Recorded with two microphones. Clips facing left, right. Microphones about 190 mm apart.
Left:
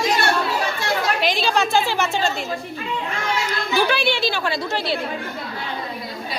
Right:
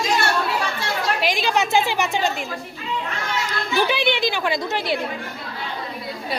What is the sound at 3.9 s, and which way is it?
A woman's voice, 20° right (ahead or behind).